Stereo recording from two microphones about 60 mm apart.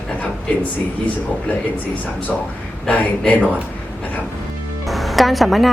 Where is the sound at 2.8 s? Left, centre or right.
Left.